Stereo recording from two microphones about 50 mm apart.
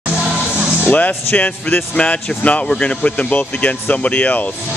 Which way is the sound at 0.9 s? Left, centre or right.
Left.